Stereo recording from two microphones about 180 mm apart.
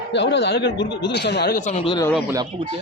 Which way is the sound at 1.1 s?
70° left (ahead or behind).